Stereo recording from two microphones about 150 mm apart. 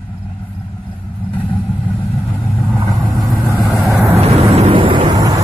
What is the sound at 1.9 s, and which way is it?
Vehicle, 10° left (ahead or behind).